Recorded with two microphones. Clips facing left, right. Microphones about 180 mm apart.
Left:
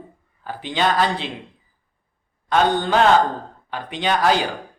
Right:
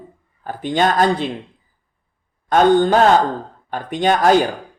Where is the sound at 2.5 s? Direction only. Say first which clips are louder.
Right 6 dB; 45° right (ahead or behind).